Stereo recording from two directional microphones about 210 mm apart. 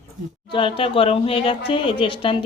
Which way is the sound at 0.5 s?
25° left (ahead or behind).